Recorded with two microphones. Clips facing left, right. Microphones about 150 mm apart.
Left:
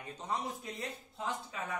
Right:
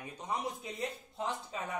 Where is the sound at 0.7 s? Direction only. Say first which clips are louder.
Right 4 dB; 25° right (ahead or behind).